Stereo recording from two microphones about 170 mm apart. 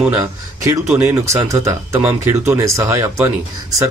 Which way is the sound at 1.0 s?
15° right (ahead or behind).